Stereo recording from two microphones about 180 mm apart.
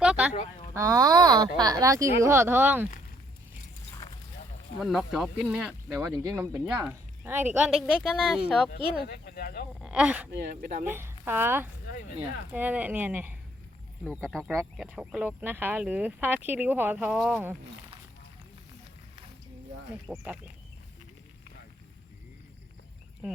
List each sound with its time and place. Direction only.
0.0 s a sound: 5° right (ahead or behind)
0.7 s a sound: 20° right (ahead or behind)
1.5 s speech: 20° right (ahead or behind)
4.8 s speech: centre (ahead or behind)
9.0 s speech: 60° left (ahead or behind)
9.8 s speech: 5° right (ahead or behind)
10.3 s speech: 65° right (ahead or behind)
10.8 s speech: 10° right (ahead or behind)
14.1 s speech: 5° left (ahead or behind)
20.1 s speech: 10° right (ahead or behind)